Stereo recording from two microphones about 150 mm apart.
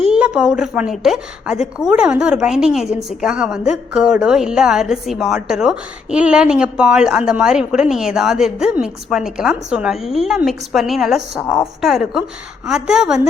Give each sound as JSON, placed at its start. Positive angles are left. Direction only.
{"t": 0.0, "sound": "a woman's voice", "side_deg": -5}